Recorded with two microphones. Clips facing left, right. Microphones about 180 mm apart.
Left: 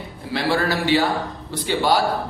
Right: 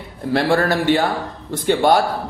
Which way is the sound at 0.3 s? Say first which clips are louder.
Right 4 dB; 50° right (ahead or behind).